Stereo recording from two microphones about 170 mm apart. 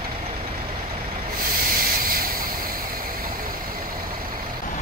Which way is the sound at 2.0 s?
60° right (ahead or behind).